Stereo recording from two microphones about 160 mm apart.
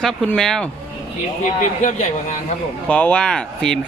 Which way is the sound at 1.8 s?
50° left (ahead or behind).